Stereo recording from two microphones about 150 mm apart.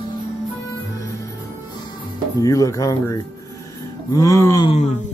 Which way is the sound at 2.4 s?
20° left (ahead or behind).